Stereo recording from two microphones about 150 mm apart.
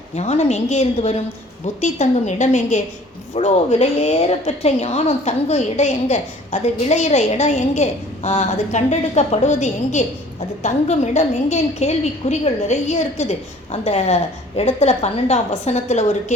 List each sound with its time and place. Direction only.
0.2 s a woman's voice: 45° left (ahead or behind)